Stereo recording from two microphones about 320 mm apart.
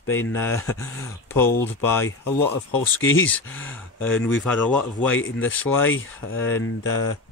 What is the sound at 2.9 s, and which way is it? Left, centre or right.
Speech, left.